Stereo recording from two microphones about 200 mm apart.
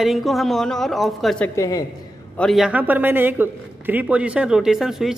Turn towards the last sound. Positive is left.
turn(degrees=0)  # may be behind; listen again after turning